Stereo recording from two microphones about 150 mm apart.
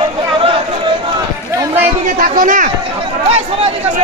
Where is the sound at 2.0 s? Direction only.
65° right (ahead or behind).